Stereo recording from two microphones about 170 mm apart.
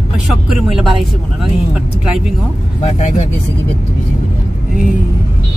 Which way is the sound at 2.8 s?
40° left (ahead or behind).